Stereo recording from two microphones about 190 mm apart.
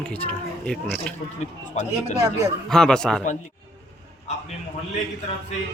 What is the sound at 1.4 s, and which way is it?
Speech, 35° left (ahead or behind).